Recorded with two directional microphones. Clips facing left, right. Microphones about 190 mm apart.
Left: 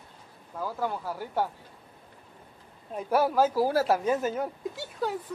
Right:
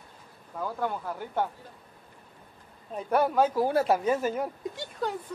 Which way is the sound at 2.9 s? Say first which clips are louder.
Even; 5° left (ahead or behind).